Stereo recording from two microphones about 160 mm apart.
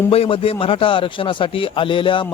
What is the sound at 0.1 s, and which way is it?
Speech, 35° left (ahead or behind).